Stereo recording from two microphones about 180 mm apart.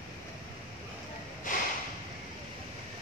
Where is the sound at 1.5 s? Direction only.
50° left (ahead or behind).